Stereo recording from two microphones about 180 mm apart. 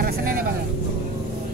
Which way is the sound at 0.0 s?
50° right (ahead or behind).